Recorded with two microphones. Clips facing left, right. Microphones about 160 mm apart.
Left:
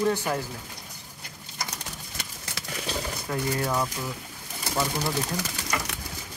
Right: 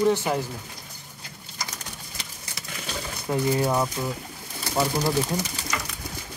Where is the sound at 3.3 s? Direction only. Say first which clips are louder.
Right 6 dB; 20° right (ahead or behind).